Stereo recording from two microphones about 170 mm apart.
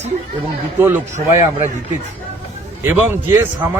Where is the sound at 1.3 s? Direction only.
15° right (ahead or behind).